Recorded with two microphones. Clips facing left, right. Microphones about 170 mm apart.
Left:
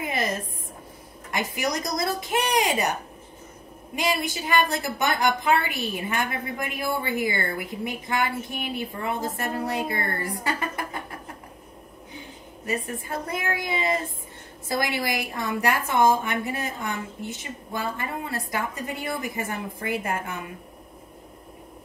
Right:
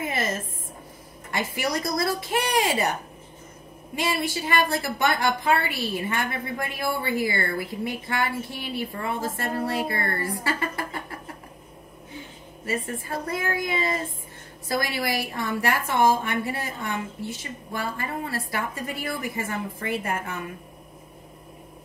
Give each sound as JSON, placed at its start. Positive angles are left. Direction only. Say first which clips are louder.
{"t": 0.0, "sound": "a sound", "louder": "even", "side_deg": 20}
{"t": 1.3, "sound": "a woman's voice", "louder": "even", "side_deg": 20}
{"t": 3.9, "sound": "a woman's voice", "louder": "even", "side_deg": 20}
{"t": 12.6, "sound": "a woman's voice", "louder": "even", "side_deg": 20}